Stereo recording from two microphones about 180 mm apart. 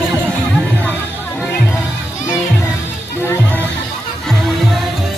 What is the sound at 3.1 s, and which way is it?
Music, 10° left (ahead or behind).